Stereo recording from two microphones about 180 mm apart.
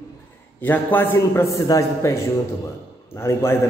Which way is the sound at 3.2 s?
15° left (ahead or behind).